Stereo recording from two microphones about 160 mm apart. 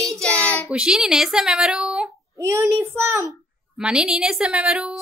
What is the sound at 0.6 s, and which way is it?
A woman's voice, 5° right (ahead or behind).